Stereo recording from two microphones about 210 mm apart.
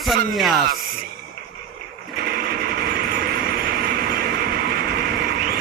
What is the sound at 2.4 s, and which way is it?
Vehicle, 45° right (ahead or behind).